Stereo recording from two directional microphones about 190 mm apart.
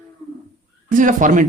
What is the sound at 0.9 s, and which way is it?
Speech, 45° right (ahead or behind).